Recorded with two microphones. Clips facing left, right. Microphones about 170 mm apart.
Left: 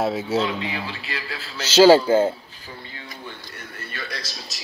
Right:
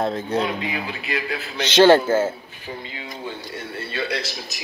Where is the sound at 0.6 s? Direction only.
10° right (ahead or behind).